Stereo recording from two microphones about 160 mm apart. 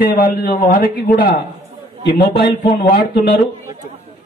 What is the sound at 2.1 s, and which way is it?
Speech, 85° left.